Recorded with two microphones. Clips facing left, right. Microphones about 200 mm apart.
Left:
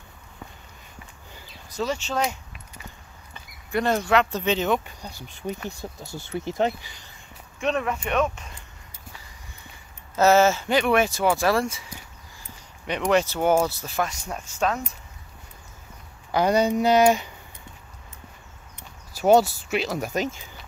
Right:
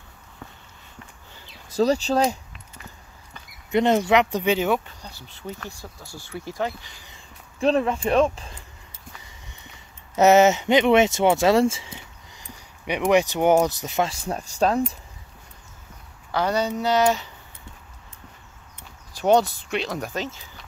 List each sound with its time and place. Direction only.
1.8 s speech: 35° right (ahead or behind)
3.7 s speech: 20° right (ahead or behind)
4.8 s speech: 15° left (ahead or behind)
7.6 s speech: 30° right (ahead or behind)
10.1 s speech: 20° right (ahead or behind)
12.4 s speech: 10° right (ahead or behind)
14.2 s speech: 35° right (ahead or behind)
16.3 s speech: 15° left (ahead or behind)
19.1 s speech: 5° left (ahead or behind)